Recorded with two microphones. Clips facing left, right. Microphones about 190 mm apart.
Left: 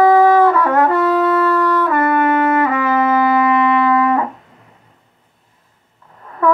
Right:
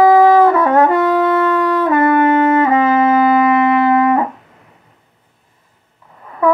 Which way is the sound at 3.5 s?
45° right (ahead or behind).